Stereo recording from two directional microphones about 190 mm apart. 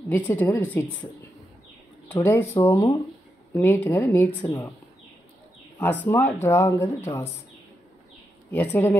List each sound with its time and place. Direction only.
0.1 s speech: 10° left (ahead or behind)
2.0 s speech: 10° left (ahead or behind)
5.8 s speech: 10° left (ahead or behind)
8.5 s speech: 10° left (ahead or behind)